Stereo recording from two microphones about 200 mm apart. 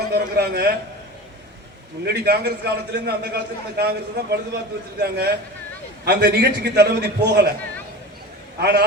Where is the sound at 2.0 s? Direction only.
55° right (ahead or behind).